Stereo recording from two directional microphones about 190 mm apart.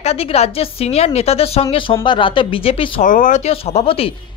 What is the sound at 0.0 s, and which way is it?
A woman's voice, 30° left (ahead or behind).